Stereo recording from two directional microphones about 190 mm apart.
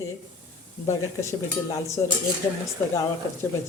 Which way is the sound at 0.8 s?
15° left (ahead or behind).